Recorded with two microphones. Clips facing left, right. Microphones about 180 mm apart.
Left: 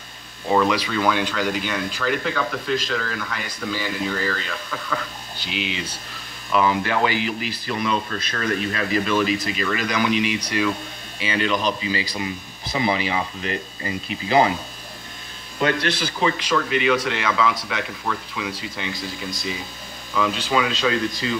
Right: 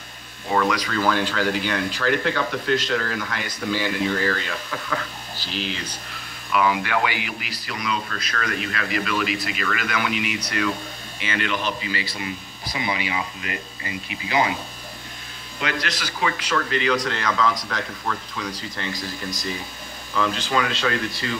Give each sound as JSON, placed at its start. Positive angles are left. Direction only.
{"t": 0.5, "sound": "speech", "side_deg": 25}
{"t": 0.8, "sound": "speech", "side_deg": 5}
{"t": 5.4, "sound": "speech", "side_deg": 20}
{"t": 6.5, "sound": "speech", "side_deg": 30}
{"t": 15.6, "sound": "speech", "side_deg": 30}
{"t": 16.4, "sound": "speech", "side_deg": 10}